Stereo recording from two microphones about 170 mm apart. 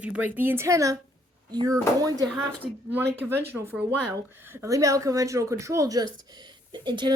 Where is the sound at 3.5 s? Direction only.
10° right (ahead or behind); by 7.1 s 25° right (ahead or behind).